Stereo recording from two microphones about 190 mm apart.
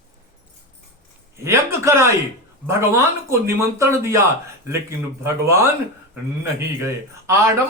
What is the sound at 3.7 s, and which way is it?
Speech, 15° right (ahead or behind).